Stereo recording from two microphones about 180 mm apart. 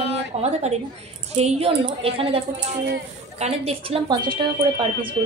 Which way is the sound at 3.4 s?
35° right (ahead or behind).